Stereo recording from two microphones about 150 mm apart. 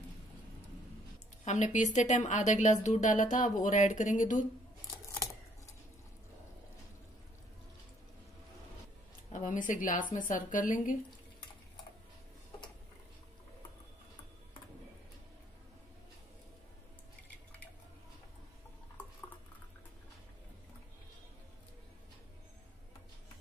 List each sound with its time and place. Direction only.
1.4 s a woman's voice: 50° left (ahead or behind)
9.3 s a woman's voice: 60° left (ahead or behind)